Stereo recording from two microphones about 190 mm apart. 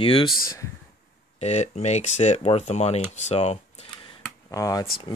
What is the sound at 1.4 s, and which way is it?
Speech, 35° left (ahead or behind).